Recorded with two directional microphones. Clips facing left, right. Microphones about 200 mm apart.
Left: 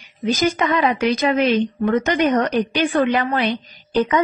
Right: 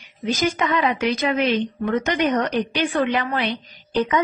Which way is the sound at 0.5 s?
40° left (ahead or behind).